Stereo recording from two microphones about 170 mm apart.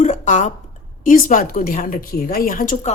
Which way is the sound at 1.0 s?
55° left (ahead or behind).